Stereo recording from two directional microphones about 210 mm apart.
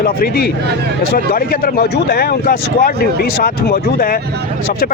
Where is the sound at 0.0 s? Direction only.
45° left (ahead or behind).